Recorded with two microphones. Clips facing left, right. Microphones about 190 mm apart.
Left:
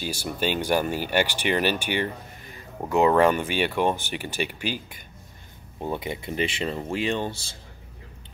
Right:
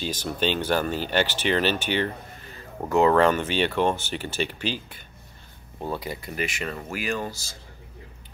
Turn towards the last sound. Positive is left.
turn(degrees=30)  # may be behind; listen again after turning